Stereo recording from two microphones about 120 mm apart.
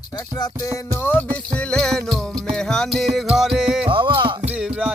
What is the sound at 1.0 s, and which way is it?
Music, 15° left (ahead or behind).